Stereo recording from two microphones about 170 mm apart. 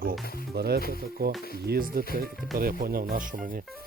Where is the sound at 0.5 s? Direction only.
65° right (ahead or behind).